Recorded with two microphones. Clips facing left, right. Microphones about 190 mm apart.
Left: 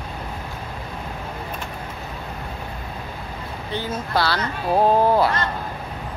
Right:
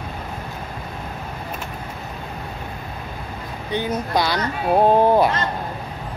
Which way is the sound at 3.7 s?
15° right (ahead or behind).